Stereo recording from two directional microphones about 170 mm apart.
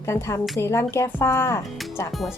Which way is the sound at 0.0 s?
15° left (ahead or behind).